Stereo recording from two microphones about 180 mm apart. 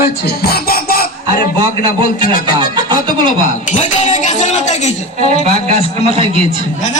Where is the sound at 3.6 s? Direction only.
40° left (ahead or behind).